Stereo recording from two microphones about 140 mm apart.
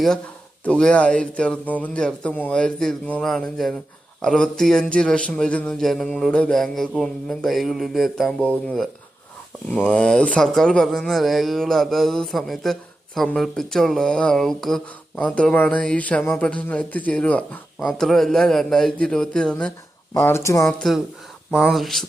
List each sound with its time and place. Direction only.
0.6 s a man's voice: 5° left (ahead or behind)
20.1 s speech: 15° left (ahead or behind)
20.7 s a man's voice: centre (ahead or behind)